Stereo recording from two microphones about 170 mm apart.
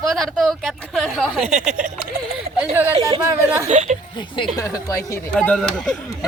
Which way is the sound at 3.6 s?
45° right (ahead or behind).